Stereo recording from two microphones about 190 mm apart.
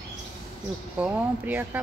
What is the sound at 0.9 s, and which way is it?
Speech, 5° right (ahead or behind).